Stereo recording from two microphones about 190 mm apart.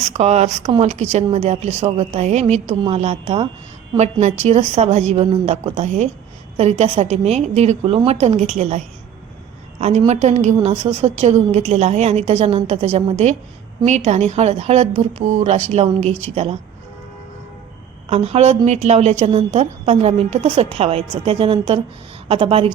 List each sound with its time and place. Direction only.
0.0 s a woman's voice: 35° right (ahead or behind)
10.1 s a woman's voice: 35° right (ahead or behind)
18.1 s a woman's voice: 35° right (ahead or behind)